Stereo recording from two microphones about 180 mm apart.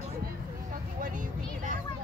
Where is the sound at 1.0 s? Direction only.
45° right (ahead or behind).